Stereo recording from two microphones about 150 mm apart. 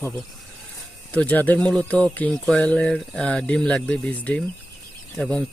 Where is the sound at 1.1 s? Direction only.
10° left (ahead or behind).